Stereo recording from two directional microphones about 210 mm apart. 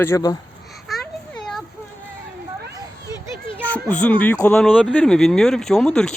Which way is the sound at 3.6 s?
5° left (ahead or behind).